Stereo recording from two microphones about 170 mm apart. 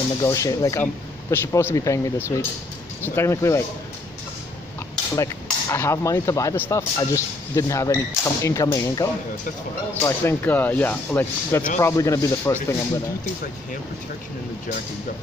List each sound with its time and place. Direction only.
0.2 s speech: 20° left (ahead or behind)
5.1 s speech: 15° left (ahead or behind)